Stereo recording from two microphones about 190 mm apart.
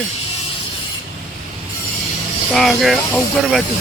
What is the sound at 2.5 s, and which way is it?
Speech, centre (ahead or behind).